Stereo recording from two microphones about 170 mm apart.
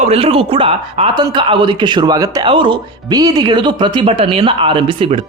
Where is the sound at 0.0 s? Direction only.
35° right (ahead or behind).